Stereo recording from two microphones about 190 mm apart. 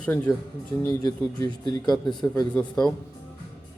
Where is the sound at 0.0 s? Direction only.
10° left (ahead or behind).